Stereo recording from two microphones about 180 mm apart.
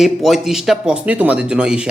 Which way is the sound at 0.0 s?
Centre (ahead or behind).